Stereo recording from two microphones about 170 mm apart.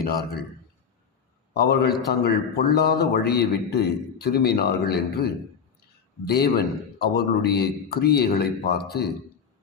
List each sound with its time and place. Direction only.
1.5 s a man's voice: 70° left (ahead or behind)